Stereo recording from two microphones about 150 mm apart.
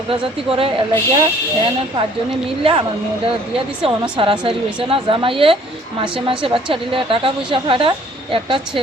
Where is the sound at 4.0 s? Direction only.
30° right (ahead or behind).